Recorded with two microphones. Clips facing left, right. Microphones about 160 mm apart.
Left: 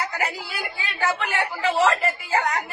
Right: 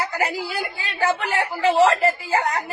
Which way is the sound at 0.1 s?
35° right (ahead or behind).